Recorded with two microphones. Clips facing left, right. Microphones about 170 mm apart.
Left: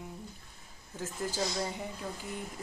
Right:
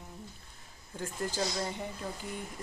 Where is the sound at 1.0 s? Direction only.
5° left (ahead or behind).